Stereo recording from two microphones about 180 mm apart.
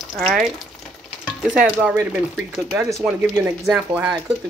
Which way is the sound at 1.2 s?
5° right (ahead or behind).